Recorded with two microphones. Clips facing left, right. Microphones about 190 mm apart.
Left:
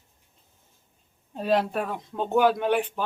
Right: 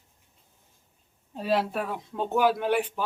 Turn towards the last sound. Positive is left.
turn(degrees=-5)  # may be behind; listen again after turning